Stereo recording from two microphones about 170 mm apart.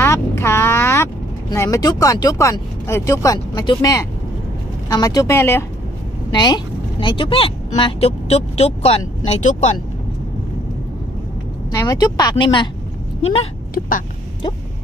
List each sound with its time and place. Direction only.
0.0 s speech: 15° left (ahead or behind); by 9.8 s 45° left (ahead or behind)
11.7 s speech: 20° left (ahead or behind)